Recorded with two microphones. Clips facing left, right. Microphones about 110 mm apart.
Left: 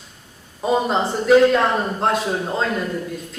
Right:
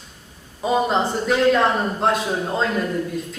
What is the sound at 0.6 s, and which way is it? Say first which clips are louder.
A man's voice: even; centre (ahead or behind).